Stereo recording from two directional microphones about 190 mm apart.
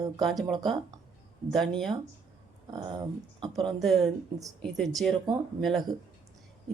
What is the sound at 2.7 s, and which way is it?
Speech, 25° right (ahead or behind).